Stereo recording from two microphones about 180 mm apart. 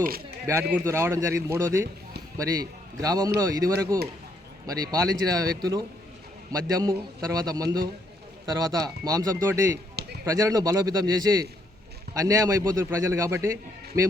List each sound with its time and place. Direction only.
0.7 s a man's voice: 15° right (ahead or behind)
9.9 s a sound: 65° right (ahead or behind)
10.2 s a man's voice: 20° right (ahead or behind)